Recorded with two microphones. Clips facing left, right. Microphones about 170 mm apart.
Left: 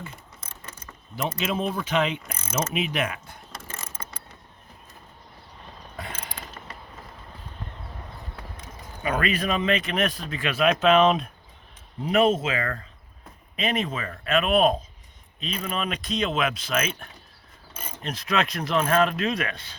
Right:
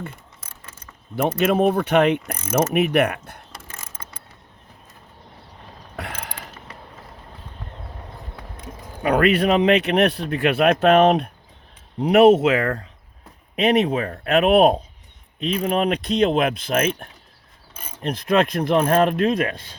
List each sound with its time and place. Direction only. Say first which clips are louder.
1.1 s speech: right 9 dB; 55° right (ahead or behind)
6.0 s mechanisms: right 5 dB; 75° right (ahead or behind)
8.5 s speech: right 5 dB; 65° right (ahead or behind)
11.9 s speech: right 8 dB; 75° right (ahead or behind); by 19.7 s 50° right (ahead or behind)